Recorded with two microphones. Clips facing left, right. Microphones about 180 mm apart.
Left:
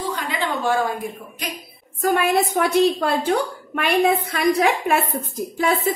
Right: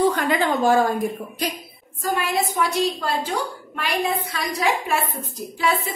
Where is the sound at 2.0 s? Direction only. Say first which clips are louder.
Left 5 dB; 60° left (ahead or behind).